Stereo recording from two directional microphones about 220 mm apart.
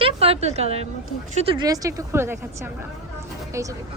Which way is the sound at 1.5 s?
15° right (ahead or behind).